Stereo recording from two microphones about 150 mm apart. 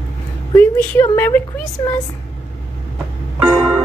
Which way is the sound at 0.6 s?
15° left (ahead or behind).